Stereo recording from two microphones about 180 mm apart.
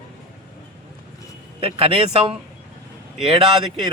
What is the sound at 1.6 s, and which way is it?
Speech, 30° right (ahead or behind).